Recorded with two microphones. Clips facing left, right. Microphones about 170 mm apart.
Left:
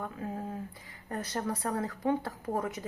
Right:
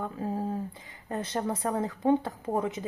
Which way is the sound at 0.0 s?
30° right (ahead or behind).